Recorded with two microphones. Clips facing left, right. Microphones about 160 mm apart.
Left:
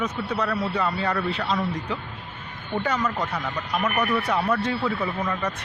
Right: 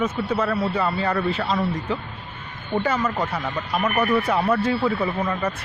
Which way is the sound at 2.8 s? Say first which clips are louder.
Right 2 dB; 5° right (ahead or behind).